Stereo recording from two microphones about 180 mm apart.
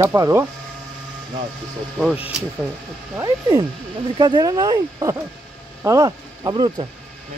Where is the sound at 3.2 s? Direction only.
20° right (ahead or behind).